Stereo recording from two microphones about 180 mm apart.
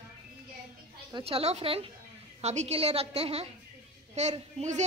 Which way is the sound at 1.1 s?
30° right (ahead or behind).